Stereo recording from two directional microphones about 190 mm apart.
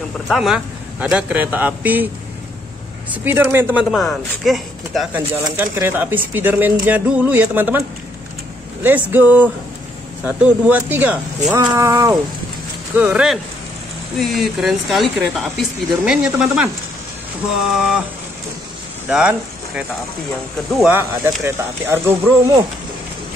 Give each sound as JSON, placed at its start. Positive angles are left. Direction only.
{"t": 0.3, "sound": "speech", "side_deg": 0}
{"t": 3.3, "sound": "speech", "side_deg": -10}
{"t": 5.3, "sound": "speech", "side_deg": -10}
{"t": 8.8, "sound": "speech", "side_deg": -10}
{"t": 19.0, "sound": "speech", "side_deg": -5}
{"t": 21.0, "sound": "speech", "side_deg": -10}